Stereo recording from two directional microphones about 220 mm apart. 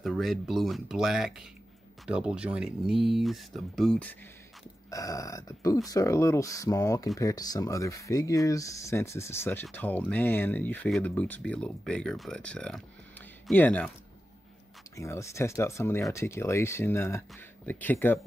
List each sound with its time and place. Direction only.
0.0 s speech: centre (ahead or behind)
4.9 s speech: 15° left (ahead or behind)
15.0 s speech: 15° left (ahead or behind)